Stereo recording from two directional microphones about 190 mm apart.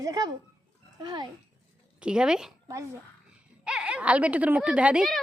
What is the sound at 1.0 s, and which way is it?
Speech, 20° right (ahead or behind).